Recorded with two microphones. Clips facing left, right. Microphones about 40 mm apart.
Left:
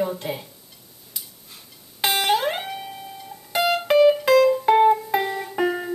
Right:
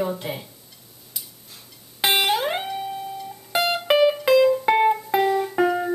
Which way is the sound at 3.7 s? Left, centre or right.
Centre.